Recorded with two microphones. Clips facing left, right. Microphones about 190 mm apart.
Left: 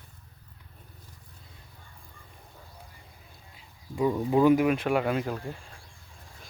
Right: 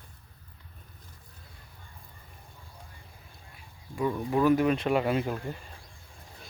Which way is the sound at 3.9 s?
20° left (ahead or behind).